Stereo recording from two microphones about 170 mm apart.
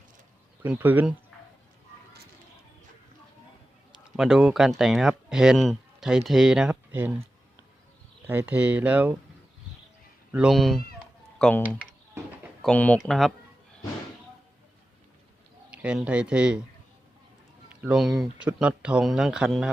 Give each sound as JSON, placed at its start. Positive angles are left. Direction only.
{"t": 0.6, "sound": "speech", "side_deg": -10}
{"t": 4.2, "sound": "speech", "side_deg": -5}
{"t": 8.3, "sound": "speech", "side_deg": -10}
{"t": 10.3, "sound": "speech", "side_deg": -5}
{"t": 15.7, "sound": "speech", "side_deg": -5}
{"t": 17.7, "sound": "speech", "side_deg": -5}